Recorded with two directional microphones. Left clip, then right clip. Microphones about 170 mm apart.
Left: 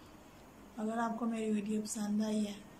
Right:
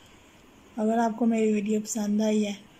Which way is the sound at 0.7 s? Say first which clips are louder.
Right 11 dB; 40° right (ahead or behind).